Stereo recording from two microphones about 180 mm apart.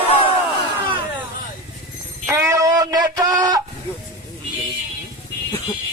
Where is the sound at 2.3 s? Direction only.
15° right (ahead or behind).